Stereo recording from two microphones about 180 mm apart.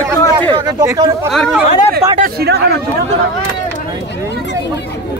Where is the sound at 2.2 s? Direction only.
65° right (ahead or behind).